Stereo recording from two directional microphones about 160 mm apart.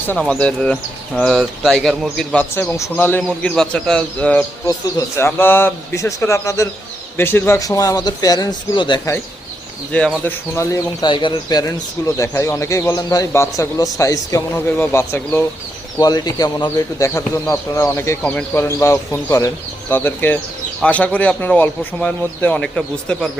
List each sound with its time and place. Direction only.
0.2 s speech: 5° left (ahead or behind)
4.6 s speech: 20° left (ahead or behind)
9.9 s speech: 5° left (ahead or behind)
10.2 s speech: 15° left (ahead or behind)
11.1 s speech: 30° left (ahead or behind); by 23.3 s 5° left (ahead or behind)